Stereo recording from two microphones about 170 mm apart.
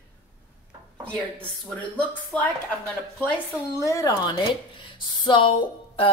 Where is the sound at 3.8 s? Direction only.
20° left (ahead or behind).